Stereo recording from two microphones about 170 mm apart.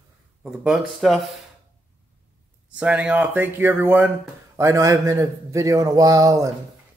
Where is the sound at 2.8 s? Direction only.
10° right (ahead or behind).